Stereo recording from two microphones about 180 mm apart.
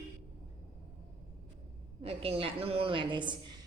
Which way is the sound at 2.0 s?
30° right (ahead or behind).